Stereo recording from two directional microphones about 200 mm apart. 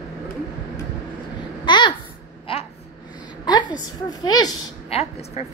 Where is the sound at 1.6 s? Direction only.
20° left (ahead or behind).